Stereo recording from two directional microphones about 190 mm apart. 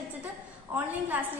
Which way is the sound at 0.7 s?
10° right (ahead or behind).